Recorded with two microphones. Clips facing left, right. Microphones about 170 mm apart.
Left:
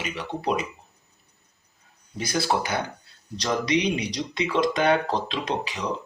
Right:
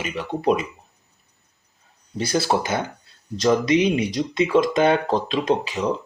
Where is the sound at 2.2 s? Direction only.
30° right (ahead or behind).